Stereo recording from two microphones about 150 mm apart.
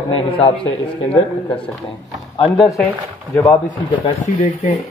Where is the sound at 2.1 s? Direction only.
Centre (ahead or behind).